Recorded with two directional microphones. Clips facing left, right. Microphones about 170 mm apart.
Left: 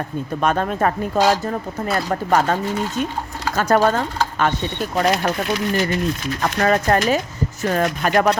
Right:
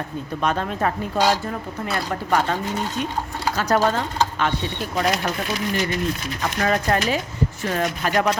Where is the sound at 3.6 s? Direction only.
50° left (ahead or behind).